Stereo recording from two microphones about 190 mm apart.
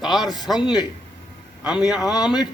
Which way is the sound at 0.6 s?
20° left (ahead or behind).